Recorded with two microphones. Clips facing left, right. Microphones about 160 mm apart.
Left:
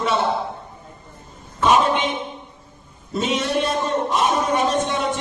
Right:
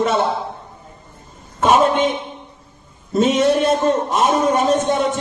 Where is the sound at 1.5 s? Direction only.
45° right (ahead or behind).